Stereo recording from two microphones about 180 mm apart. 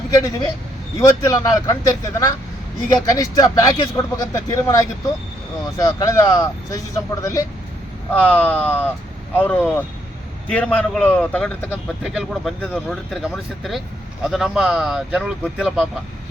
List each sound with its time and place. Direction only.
0.9 s speech: 15° left (ahead or behind); by 15.9 s 5° right (ahead or behind)